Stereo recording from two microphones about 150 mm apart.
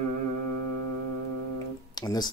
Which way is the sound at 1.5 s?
25° left (ahead or behind).